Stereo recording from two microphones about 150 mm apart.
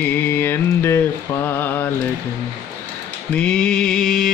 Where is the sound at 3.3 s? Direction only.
5° left (ahead or behind).